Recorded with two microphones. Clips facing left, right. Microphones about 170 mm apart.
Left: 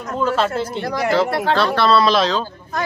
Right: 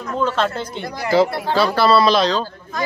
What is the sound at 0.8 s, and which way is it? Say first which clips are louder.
Speech: left 7 dB; 80° left.